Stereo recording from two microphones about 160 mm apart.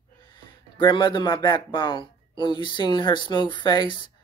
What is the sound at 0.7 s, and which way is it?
Speech, 30° left (ahead or behind).